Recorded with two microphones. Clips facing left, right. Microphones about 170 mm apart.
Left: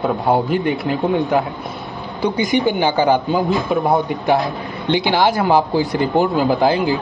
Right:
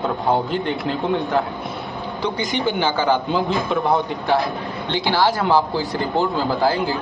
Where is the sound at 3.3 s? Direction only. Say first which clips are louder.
Left 3 dB; centre (ahead or behind).